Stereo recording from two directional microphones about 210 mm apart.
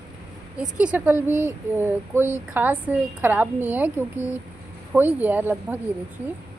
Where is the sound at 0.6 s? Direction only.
5° right (ahead or behind).